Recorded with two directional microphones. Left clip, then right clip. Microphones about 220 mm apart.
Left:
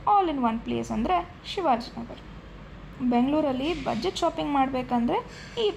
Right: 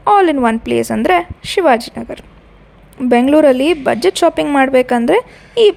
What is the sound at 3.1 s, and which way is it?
A woman's voice, 50° right (ahead or behind).